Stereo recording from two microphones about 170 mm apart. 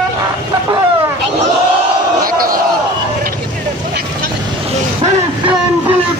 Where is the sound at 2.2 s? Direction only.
55° right (ahead or behind).